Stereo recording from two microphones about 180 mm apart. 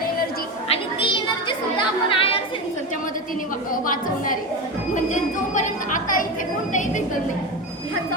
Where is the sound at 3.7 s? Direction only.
50° left (ahead or behind).